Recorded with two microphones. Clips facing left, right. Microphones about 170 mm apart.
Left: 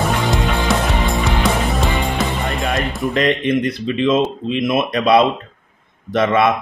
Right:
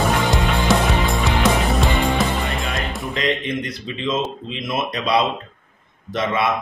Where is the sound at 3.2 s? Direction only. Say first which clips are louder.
Left 6 dB; 60° left (ahead or behind).